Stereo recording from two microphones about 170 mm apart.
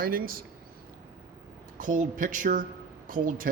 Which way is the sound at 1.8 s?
50° right (ahead or behind).